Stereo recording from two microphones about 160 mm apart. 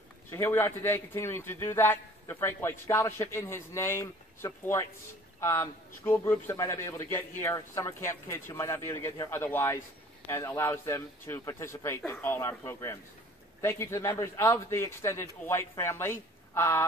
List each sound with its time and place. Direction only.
0.3 s a man's voice: 15° left (ahead or behind)